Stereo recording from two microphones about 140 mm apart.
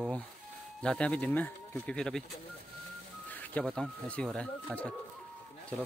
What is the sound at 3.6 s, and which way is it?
Speech, centre (ahead or behind).